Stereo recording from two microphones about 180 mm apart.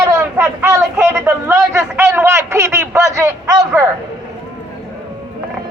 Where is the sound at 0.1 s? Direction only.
10° right (ahead or behind).